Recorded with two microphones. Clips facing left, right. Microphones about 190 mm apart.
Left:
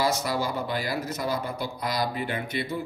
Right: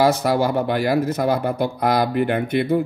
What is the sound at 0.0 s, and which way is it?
Speech, 60° right (ahead or behind).